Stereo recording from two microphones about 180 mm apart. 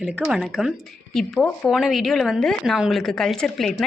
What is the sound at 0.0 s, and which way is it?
A woman's voice, 5° right (ahead or behind).